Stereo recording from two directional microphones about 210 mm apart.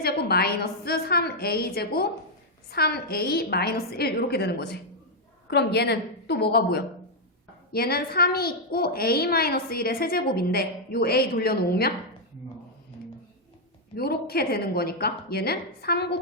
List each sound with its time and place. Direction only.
0.0 s a woman's voice: 45° left (ahead or behind)
13.9 s a woman's voice: 50° left (ahead or behind)